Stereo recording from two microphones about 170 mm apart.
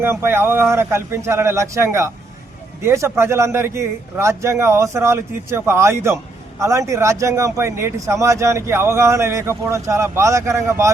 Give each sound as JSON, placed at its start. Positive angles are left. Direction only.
{"t": 0.0, "sound": "speech", "side_deg": -15}